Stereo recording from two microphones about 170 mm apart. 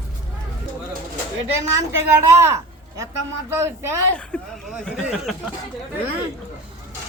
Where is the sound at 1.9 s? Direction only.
15° right (ahead or behind).